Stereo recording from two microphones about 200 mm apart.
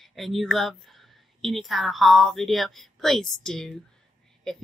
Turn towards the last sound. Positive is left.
turn(degrees=0)  # may be behind; listen again after turning